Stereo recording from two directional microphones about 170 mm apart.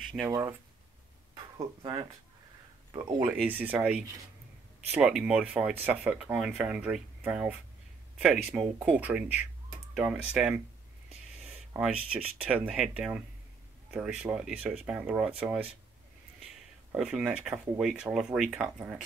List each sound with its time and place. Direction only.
0.0 s a sound: centre (ahead or behind)
0.3 s speech: 20° right (ahead or behind)
1.3 s a sound: 25° right (ahead or behind)
2.9 s speech: 25° right (ahead or behind)
3.4 s speech: 10° right (ahead or behind)
11.7 s speech: 10° right (ahead or behind)
16.9 s speech: 5° right (ahead or behind)